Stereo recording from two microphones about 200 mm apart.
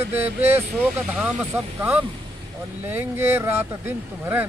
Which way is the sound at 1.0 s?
5° right (ahead or behind).